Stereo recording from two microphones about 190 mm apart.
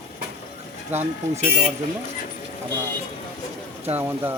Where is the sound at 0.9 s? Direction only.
10° right (ahead or behind).